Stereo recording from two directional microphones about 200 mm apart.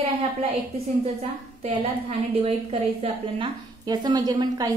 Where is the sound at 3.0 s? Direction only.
25° right (ahead or behind).